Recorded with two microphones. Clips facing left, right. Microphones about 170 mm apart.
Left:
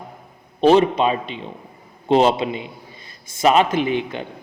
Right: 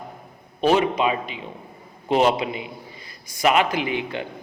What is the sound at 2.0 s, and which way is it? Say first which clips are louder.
A man's voice: left 3 dB; 25° left (ahead or behind).